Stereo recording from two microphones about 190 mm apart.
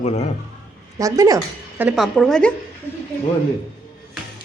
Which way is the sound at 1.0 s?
15° right (ahead or behind).